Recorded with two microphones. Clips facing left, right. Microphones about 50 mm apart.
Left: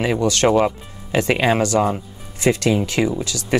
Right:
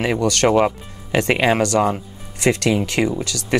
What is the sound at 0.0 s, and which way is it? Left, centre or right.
Speech, right.